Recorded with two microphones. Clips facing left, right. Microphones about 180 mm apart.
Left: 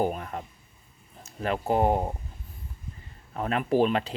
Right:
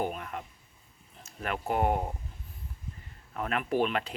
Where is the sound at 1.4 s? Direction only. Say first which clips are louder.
Left 5 dB; 30° left (ahead or behind).